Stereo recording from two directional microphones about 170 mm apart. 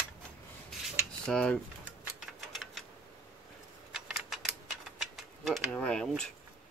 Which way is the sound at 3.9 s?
Centre (ahead or behind).